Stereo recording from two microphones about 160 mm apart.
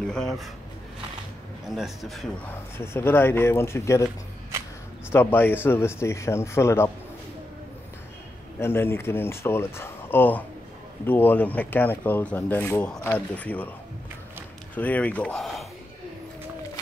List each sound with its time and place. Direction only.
0.0 s speech: 5° left (ahead or behind)
1.8 s speech: centre (ahead or behind)
2.8 s speech: 15° left (ahead or behind)
5.1 s speech: 15° left (ahead or behind)
8.5 s speech: 15° left (ahead or behind)
14.8 s speech: 10° left (ahead or behind)